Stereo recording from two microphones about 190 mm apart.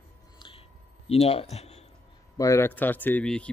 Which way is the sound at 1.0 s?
30° left (ahead or behind).